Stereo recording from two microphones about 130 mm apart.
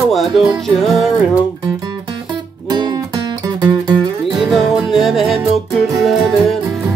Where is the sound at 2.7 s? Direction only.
30° right (ahead or behind).